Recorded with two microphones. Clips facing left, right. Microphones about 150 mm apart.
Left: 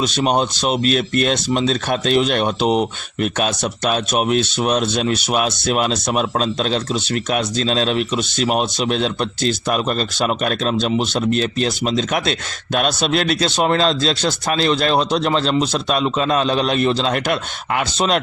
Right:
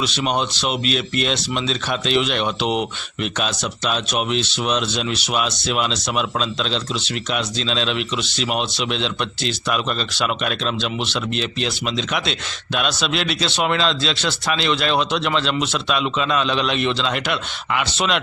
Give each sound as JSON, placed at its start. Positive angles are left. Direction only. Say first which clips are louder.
{"t": 0.0, "sound": "speech", "louder": "left 4 dB", "side_deg": 45}